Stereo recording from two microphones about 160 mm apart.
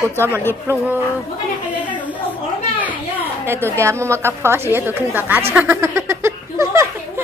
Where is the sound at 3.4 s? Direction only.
15° right (ahead or behind).